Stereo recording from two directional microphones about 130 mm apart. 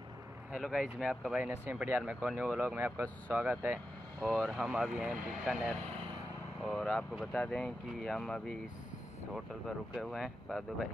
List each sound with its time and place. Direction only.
0.5 s speech: 5° right (ahead or behind)
2.6 s speech: 15° right (ahead or behind)
4.2 s speech: 5° left (ahead or behind)
9.9 s speech: centre (ahead or behind)